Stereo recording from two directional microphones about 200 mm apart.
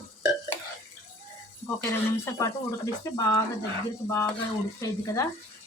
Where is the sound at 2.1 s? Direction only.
15° left (ahead or behind).